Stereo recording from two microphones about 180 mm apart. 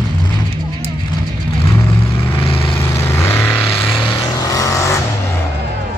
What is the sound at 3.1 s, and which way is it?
Vehicle, 10° left (ahead or behind).